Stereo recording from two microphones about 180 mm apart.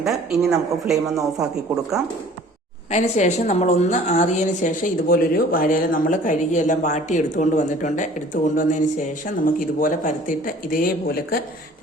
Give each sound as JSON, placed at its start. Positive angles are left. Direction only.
{"t": 0.0, "sound": "speech", "side_deg": 0}
{"t": 2.9, "sound": "a woman's voice", "side_deg": 40}